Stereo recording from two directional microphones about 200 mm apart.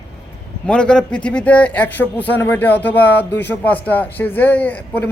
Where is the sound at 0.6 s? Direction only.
5° left (ahead or behind).